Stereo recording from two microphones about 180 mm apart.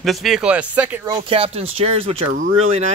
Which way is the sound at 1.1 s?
30° right (ahead or behind).